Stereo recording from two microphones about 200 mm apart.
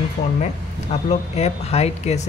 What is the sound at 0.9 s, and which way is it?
Speech, 35° left (ahead or behind).